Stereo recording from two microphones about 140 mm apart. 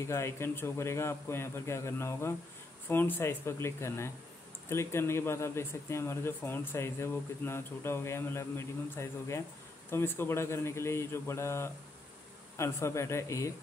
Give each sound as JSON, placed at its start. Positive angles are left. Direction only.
{"t": 0.0, "sound": "a man's voice", "side_deg": 20}